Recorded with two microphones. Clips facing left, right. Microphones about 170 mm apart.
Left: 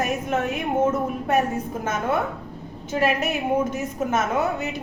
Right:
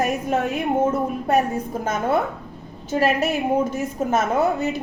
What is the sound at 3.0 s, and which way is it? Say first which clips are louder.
A woman's voice: right 2 dB; 35° right (ahead or behind).